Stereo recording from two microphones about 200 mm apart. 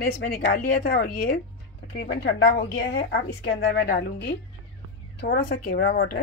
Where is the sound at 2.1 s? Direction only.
60° left (ahead or behind).